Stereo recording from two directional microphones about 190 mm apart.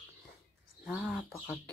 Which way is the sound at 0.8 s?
5° right (ahead or behind).